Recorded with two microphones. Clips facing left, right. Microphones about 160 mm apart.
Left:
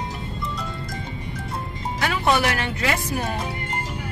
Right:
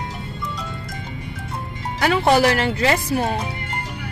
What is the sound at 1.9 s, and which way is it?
Speech, 35° right (ahead or behind).